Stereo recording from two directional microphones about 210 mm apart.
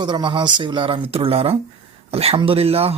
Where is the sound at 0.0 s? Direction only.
20° right (ahead or behind).